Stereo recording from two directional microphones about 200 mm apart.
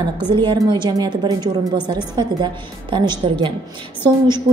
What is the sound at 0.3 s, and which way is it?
A woman's voice, 25° right (ahead or behind).